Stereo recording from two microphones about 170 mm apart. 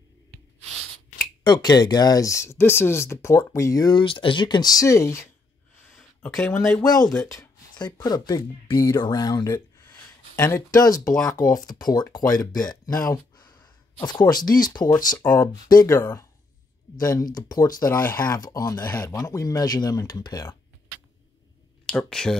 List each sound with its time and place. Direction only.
1.4 s speech: 25° left (ahead or behind)
5.9 s a sound: 5° left (ahead or behind)
6.6 s speech: 5° left (ahead or behind)
7.2 s speech: 20° left (ahead or behind)
21.8 s speech: 5° left (ahead or behind)